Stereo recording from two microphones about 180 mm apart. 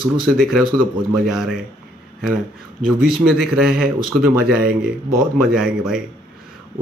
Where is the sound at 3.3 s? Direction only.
5° right (ahead or behind).